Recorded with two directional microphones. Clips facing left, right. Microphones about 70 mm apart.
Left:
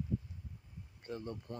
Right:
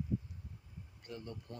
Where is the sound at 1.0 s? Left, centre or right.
Left.